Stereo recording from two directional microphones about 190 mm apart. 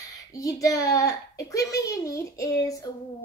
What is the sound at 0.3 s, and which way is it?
A child's voice, 15° left (ahead or behind).